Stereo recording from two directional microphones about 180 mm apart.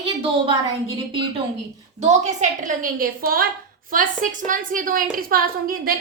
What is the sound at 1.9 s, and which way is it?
A woman's voice, 40° right (ahead or behind).